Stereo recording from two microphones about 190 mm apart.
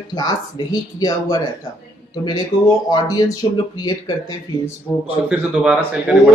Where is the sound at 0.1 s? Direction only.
20° left (ahead or behind).